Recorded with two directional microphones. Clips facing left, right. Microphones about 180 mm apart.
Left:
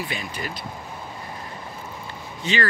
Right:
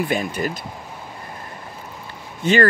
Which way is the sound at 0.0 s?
50° right (ahead or behind).